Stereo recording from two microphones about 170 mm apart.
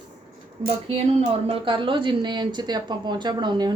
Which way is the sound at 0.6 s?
35° right (ahead or behind).